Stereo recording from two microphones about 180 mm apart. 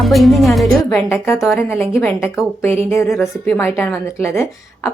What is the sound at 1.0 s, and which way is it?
A woman's voice, 15° left (ahead or behind).